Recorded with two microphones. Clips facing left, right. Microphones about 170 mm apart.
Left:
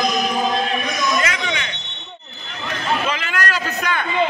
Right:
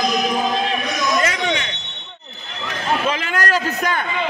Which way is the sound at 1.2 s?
40° right (ahead or behind).